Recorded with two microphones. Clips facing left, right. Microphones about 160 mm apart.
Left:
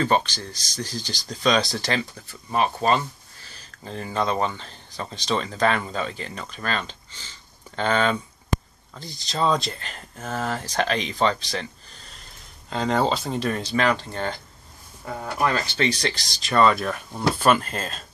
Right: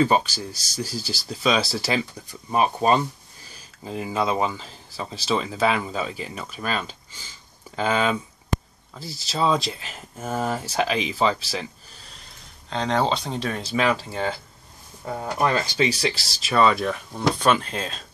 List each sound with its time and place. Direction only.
0.0 s speech: 10° right (ahead or behind)
12.6 s speech: 5° left (ahead or behind)
15.0 s speech: 15° right (ahead or behind); by 18.0 s centre (ahead or behind)